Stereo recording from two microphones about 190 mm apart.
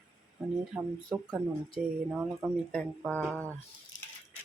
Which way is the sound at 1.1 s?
20° right (ahead or behind).